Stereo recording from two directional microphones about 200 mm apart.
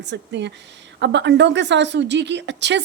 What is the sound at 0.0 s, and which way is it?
A woman's voice, 60° right (ahead or behind).